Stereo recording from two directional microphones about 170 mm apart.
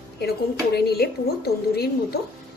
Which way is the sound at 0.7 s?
70° left (ahead or behind).